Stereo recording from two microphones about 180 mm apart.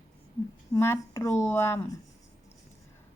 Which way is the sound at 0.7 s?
15° left (ahead or behind).